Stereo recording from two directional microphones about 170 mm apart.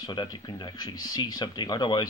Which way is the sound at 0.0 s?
25° left (ahead or behind).